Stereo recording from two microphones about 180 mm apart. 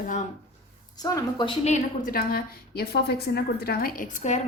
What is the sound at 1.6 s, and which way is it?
A woman's voice, 50° left (ahead or behind).